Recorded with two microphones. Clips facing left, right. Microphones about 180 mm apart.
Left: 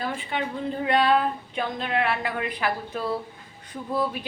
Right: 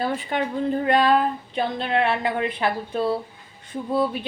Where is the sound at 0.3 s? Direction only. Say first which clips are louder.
Right 3 dB; 45° right (ahead or behind).